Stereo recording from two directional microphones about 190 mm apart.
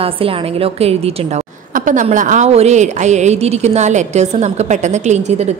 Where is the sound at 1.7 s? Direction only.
45° right (ahead or behind).